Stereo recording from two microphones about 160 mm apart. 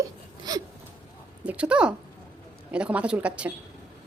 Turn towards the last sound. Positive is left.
turn(degrees=-10)  # may be behind; listen again after turning